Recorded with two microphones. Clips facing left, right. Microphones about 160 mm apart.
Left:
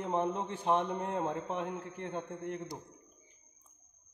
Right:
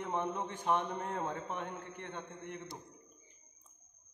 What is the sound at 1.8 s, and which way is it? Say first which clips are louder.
Speech: left 5 dB; 35° left (ahead or behind).